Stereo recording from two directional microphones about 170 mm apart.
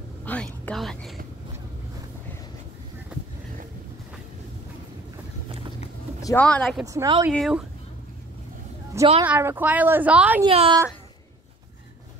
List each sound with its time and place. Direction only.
0.2 s a sound: 10° left (ahead or behind)
3.1 s a sound: 5° right (ahead or behind)
6.2 s speech: 10° left (ahead or behind)
6.9 s a woman's voice: 25° right (ahead or behind)
7.3 s speech: centre (ahead or behind)
9.2 s speech: 10° right (ahead or behind)
10.4 s a child's voice: 30° right (ahead or behind)